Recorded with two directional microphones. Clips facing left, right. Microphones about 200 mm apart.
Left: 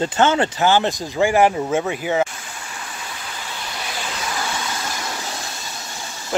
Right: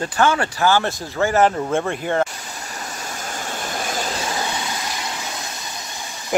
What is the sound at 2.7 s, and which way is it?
Stream, 40° right (ahead or behind).